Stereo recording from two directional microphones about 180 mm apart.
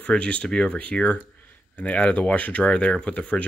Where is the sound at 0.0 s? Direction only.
5° left (ahead or behind).